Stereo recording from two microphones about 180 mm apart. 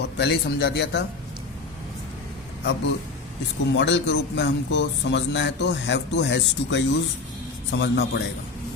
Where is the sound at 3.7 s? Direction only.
75° left (ahead or behind).